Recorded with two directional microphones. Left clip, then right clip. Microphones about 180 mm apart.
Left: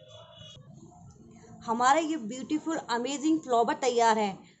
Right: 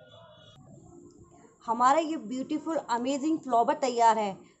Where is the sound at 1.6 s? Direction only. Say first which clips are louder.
Right 1 dB; 5° right (ahead or behind).